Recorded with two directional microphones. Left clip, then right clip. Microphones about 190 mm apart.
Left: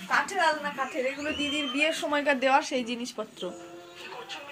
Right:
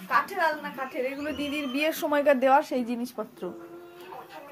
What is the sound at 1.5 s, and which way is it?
Speech, 50° right (ahead or behind).